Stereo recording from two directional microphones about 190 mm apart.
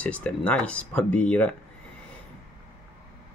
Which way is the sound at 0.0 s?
5° left (ahead or behind).